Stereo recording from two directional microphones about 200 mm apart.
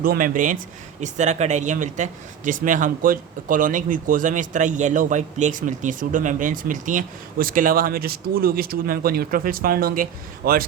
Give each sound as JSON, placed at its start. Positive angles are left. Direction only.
{"t": 0.0, "sound": "speech", "side_deg": -45}